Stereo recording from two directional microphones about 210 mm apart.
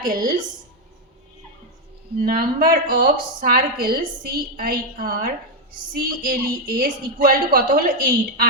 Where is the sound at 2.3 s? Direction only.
45° right (ahead or behind).